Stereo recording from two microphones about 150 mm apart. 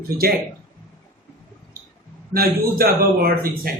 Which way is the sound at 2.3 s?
85° right.